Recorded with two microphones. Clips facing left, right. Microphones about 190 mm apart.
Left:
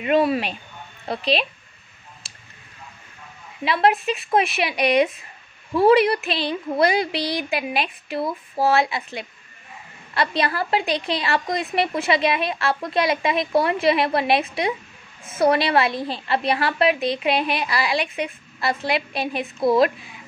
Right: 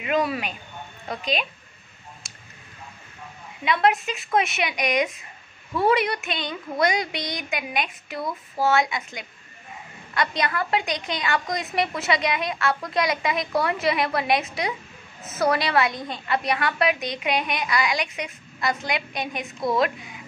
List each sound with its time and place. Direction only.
0.0 s a woman's voice: 30° left (ahead or behind)
3.6 s a woman's voice: 30° left (ahead or behind)